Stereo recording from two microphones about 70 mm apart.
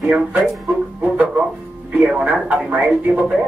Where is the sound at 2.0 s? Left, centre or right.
Centre.